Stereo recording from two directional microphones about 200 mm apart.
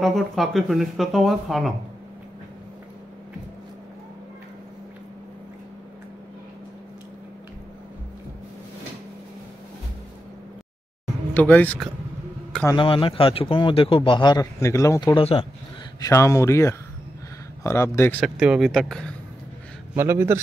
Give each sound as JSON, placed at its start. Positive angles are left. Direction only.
{"t": 0.0, "sound": "speech", "side_deg": 0}
{"t": 11.3, "sound": "speech", "side_deg": 10}
{"t": 12.6, "sound": "a man's voice", "side_deg": 25}
{"t": 15.1, "sound": "a man's voice", "side_deg": 30}
{"t": 16.0, "sound": "speech", "side_deg": 15}
{"t": 18.2, "sound": "speech", "side_deg": -5}
{"t": 20.0, "sound": "a man's voice", "side_deg": -10}